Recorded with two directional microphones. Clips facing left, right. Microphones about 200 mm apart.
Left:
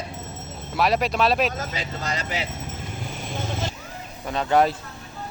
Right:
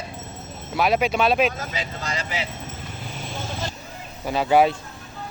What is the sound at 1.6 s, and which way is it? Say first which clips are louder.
Speech: even; 40° left (ahead or behind).